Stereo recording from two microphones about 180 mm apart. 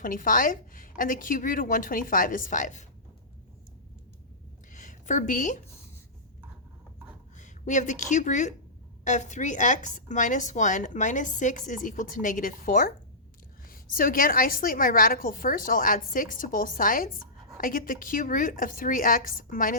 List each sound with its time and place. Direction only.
0.0 s speech: 50° left (ahead or behind)
4.7 s a sound: 45° left (ahead or behind)
7.3 s a woman's voice: 45° left (ahead or behind)